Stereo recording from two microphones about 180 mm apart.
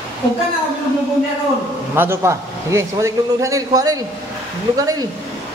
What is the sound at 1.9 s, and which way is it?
A man's voice, 15° right (ahead or behind).